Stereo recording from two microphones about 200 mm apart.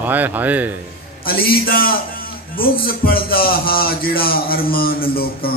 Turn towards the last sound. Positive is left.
turn(degrees=50)  # may be behind; listen again after turning